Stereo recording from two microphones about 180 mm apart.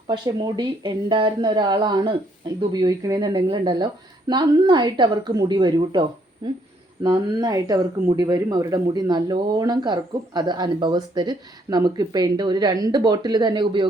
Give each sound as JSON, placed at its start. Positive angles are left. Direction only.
{"t": 0.1, "sound": "speech", "side_deg": -25}